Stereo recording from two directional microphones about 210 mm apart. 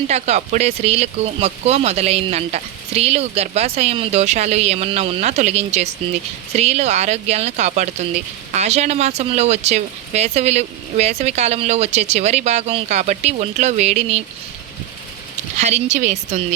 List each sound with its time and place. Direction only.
0.1 s speech: 30° right (ahead or behind)
15.5 s speech: 35° right (ahead or behind)